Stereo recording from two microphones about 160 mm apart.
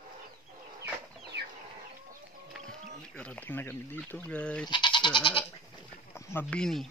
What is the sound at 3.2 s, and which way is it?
Speech, 10° left (ahead or behind).